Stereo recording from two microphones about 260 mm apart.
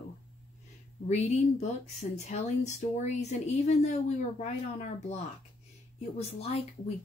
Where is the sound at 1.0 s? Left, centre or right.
Left.